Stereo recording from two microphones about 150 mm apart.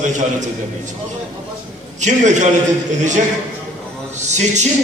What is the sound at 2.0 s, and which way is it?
A man's voice, 55° right (ahead or behind).